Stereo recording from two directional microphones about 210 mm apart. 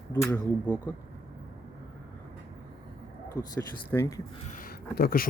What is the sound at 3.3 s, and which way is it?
Speech, 15° left (ahead or behind).